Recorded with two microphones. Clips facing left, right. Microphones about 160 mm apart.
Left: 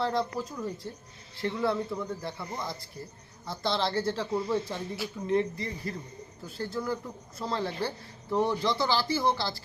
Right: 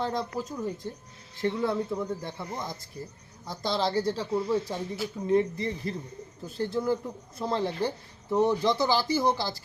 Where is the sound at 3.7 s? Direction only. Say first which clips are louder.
Right 2 dB; 15° right (ahead or behind).